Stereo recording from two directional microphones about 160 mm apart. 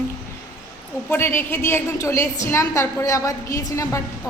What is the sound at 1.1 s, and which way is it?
A woman's voice, 15° left (ahead or behind).